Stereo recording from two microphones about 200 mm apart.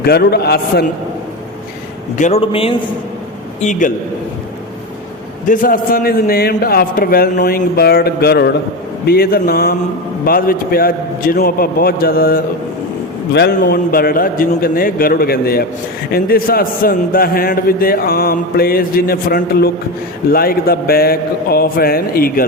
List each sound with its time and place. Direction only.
0.0 s a man's voice: 50° left (ahead or behind)
2.1 s a man's voice: 35° left (ahead or behind)
3.6 s a man's voice: 40° left (ahead or behind)
5.5 s a man's voice: 45° left (ahead or behind)
13.6 s a man's voice: 45° left (ahead or behind)